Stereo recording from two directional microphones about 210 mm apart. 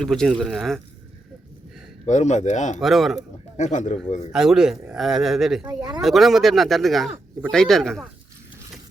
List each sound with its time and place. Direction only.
0.0 s speech: centre (ahead or behind)
2.0 s speech: 35° left (ahead or behind)
2.8 s speech: centre (ahead or behind)
3.6 s speech: 35° left (ahead or behind)
4.3 s speech: centre (ahead or behind)
5.6 s speech: 15° right (ahead or behind)
6.0 s speech: centre (ahead or behind)